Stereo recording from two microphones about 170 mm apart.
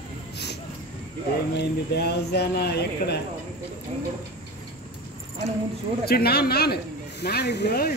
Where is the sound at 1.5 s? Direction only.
75° left (ahead or behind).